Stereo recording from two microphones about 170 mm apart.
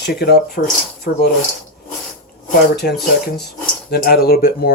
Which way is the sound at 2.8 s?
60° left (ahead or behind).